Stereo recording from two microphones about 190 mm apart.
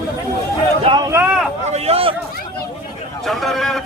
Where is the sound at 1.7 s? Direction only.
35° right (ahead or behind).